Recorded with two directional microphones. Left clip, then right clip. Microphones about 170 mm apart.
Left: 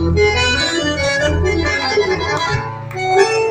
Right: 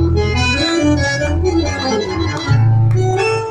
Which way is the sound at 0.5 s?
40° right (ahead or behind).